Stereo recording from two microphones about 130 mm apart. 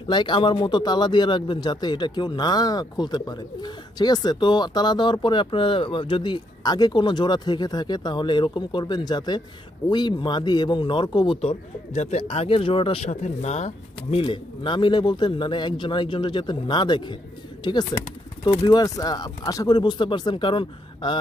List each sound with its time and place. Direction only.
0.1 s speech: 40° left (ahead or behind)
11.4 s speech: 60° left (ahead or behind); by 17.2 s 35° left (ahead or behind)
18.4 s speech: 35° left (ahead or behind)